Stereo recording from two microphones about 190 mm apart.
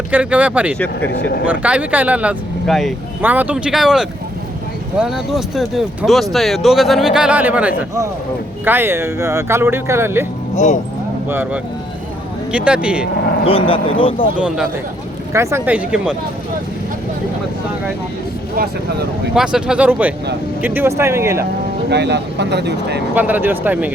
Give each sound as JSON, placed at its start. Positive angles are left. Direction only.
{"t": 0.1, "sound": "speech", "side_deg": -5}
{"t": 1.1, "sound": "speech", "side_deg": 60}
{"t": 1.5, "sound": "speech", "side_deg": -5}
{"t": 10.5, "sound": "speech", "side_deg": 40}
{"t": 11.3, "sound": "speech", "side_deg": -10}
{"t": 13.4, "sound": "speech", "side_deg": 30}
{"t": 14.3, "sound": "speech", "side_deg": -5}
{"t": 19.3, "sound": "speech", "side_deg": -5}
{"t": 21.8, "sound": "speech", "side_deg": -65}
{"t": 23.1, "sound": "speech", "side_deg": -10}